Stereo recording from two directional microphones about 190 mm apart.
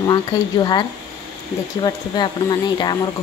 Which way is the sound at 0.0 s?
20° left (ahead or behind).